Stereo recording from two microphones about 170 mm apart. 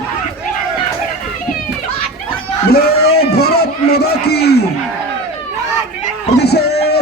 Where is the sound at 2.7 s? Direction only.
65° left (ahead or behind).